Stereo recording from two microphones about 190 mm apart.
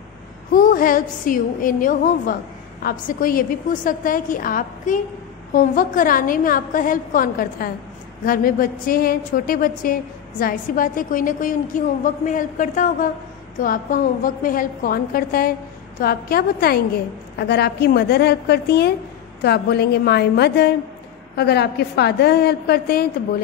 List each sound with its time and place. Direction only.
0.6 s a woman's voice: 45° left (ahead or behind)